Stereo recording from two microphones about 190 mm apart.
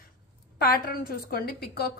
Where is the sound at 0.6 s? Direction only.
50° left (ahead or behind).